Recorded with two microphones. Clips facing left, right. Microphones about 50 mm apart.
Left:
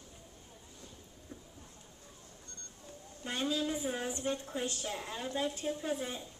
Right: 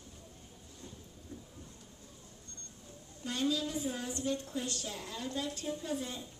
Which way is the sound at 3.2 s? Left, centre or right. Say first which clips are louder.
Even; left.